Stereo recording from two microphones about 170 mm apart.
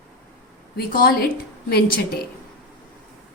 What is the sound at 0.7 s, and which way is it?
A woman's voice, 60° left (ahead or behind).